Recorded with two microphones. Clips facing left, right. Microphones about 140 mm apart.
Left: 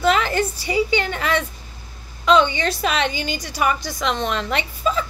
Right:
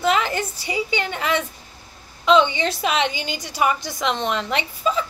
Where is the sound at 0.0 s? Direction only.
15° right (ahead or behind).